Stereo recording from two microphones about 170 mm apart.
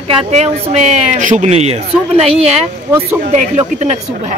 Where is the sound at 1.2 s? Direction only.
45° right (ahead or behind).